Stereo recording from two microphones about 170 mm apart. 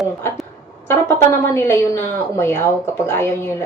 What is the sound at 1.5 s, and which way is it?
A woman's voice, 15° left (ahead or behind).